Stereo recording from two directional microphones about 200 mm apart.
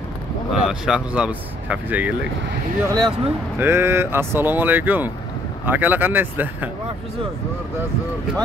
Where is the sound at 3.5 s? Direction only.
10° right (ahead or behind).